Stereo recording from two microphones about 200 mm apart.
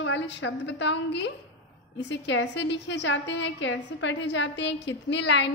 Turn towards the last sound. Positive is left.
turn(degrees=60)  # may be behind; listen again after turning